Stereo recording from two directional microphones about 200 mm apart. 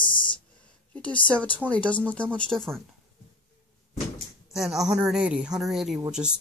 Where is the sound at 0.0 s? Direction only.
25° left (ahead or behind).